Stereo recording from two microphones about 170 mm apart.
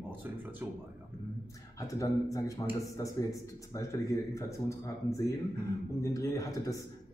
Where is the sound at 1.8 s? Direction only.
20° left (ahead or behind).